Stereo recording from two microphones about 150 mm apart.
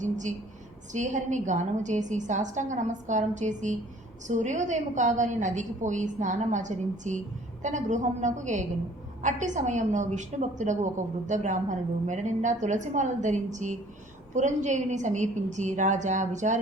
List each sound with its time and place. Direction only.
0.0 s a woman's voice: 55° right (ahead or behind)